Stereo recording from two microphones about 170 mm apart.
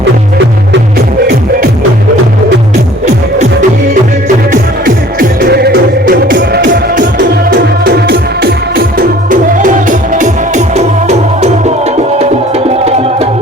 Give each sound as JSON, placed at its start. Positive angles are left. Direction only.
{"t": 5.4, "sound": "music", "side_deg": -65}